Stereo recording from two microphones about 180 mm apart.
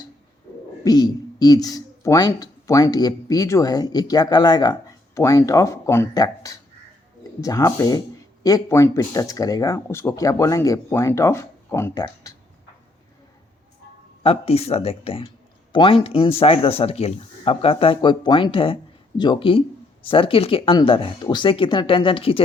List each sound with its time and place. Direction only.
0.9 s speech: 20° left (ahead or behind)
14.3 s speech: 35° left (ahead or behind)